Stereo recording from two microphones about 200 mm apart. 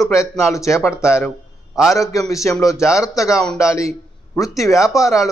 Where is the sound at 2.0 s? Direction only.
15° left (ahead or behind).